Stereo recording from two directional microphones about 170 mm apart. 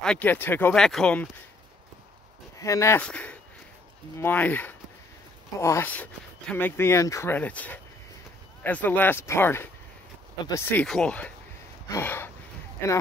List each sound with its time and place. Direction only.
0.0 s speech: 10° left (ahead or behind)
2.6 s speech: 15° left (ahead or behind)